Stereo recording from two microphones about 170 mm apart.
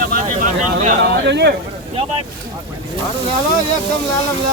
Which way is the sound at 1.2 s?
90° right.